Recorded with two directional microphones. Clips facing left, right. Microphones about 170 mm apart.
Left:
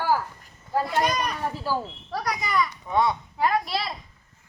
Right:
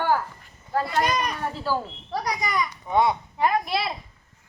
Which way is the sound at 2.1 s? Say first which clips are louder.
Even; 15° right (ahead or behind).